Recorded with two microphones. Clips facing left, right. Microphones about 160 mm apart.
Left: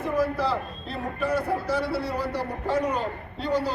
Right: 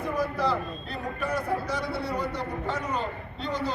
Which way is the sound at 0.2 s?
30° left (ahead or behind).